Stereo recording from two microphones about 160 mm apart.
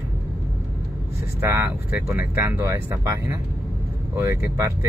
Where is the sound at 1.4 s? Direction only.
15° right (ahead or behind).